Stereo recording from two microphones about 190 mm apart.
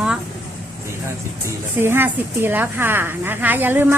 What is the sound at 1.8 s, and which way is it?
A woman's voice, 10° right (ahead or behind).